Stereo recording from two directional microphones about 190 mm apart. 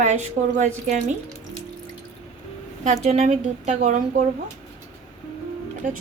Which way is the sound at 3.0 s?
35° right (ahead or behind).